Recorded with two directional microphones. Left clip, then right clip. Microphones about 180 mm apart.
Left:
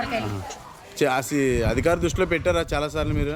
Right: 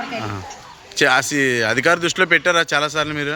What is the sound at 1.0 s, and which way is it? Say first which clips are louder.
Speech: right 7 dB; 5° left (ahead or behind).